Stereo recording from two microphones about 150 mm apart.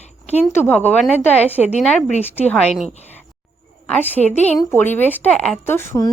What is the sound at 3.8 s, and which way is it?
A woman's voice, 10° left (ahead or behind).